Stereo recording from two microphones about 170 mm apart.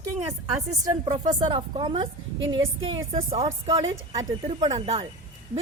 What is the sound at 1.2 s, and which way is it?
A woman's voice, 25° right (ahead or behind).